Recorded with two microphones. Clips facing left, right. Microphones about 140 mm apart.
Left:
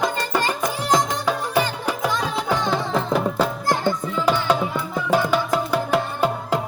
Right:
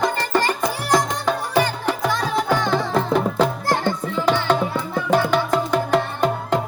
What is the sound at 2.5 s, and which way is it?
Music, 10° left (ahead or behind).